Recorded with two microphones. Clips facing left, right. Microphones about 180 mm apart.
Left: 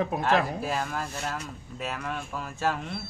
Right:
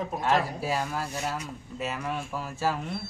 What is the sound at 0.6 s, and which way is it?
Speech, 5° right (ahead or behind).